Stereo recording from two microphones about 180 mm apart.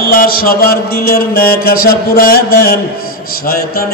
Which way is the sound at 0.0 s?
55° left (ahead or behind).